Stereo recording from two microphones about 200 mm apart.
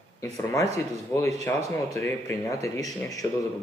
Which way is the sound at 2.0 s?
15° left (ahead or behind).